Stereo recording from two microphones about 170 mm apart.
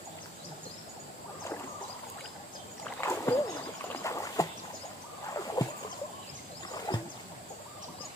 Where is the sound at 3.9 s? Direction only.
20° left (ahead or behind).